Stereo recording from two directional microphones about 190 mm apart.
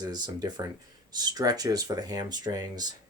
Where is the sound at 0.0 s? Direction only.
20° right (ahead or behind).